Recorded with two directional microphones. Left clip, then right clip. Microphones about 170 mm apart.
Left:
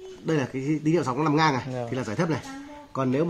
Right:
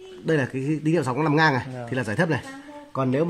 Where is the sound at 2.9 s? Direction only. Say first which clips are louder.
Right 2 dB; 35° right (ahead or behind).